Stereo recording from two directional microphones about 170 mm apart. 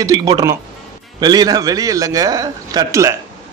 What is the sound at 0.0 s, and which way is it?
A man's voice, 20° right (ahead or behind).